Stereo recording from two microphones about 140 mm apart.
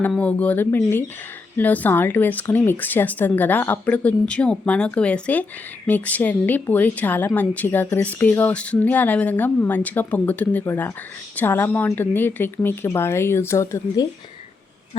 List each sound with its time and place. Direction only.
0.1 s a woman's voice: 10° left (ahead or behind)